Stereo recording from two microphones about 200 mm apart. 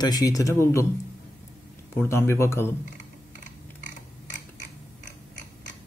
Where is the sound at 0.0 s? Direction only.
20° left (ahead or behind).